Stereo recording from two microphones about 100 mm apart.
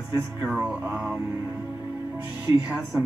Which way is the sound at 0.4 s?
10° right (ahead or behind).